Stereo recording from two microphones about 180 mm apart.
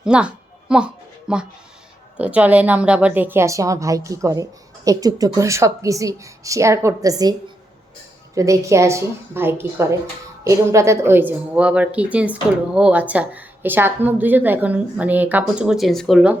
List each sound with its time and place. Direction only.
0.0 s a sound: 5° right (ahead or behind)
1.3 s a woman's voice: 5° right (ahead or behind)
8.4 s a woman's voice: 15° right (ahead or behind)